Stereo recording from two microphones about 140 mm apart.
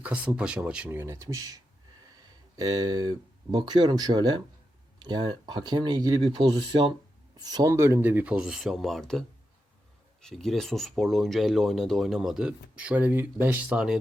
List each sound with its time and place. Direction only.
0.0 s speech: 10° right (ahead or behind); by 1.6 s 25° right (ahead or behind)
2.2 s a sound: 25° right (ahead or behind)
3.5 s speech: 30° right (ahead or behind); by 14.0 s 5° right (ahead or behind)